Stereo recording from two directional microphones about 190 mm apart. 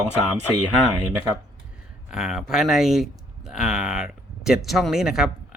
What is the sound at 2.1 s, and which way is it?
Speech, 5° right (ahead or behind).